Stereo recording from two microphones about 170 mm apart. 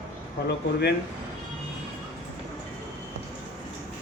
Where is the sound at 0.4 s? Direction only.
75° left (ahead or behind).